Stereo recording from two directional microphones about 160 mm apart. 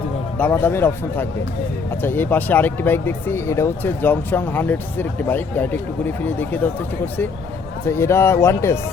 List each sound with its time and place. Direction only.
0.3 s speech: 10° left (ahead or behind)
7.9 s speech: 15° left (ahead or behind)